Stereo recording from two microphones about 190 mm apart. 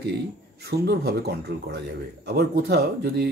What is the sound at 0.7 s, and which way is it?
A man's voice, 55° right (ahead or behind).